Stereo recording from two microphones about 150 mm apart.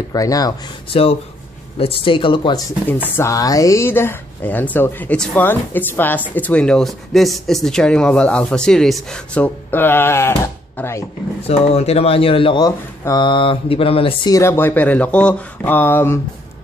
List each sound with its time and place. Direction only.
0.1 s speech: 25° left (ahead or behind)
0.8 s speech: 40° left (ahead or behind)
3.2 s speech: 20° left (ahead or behind)
11.4 s speech: 45° left (ahead or behind)
12.6 s speech: 25° left (ahead or behind)
14.3 s speech: 15° left (ahead or behind)